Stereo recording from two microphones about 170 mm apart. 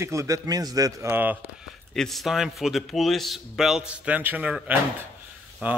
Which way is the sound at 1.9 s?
Centre (ahead or behind).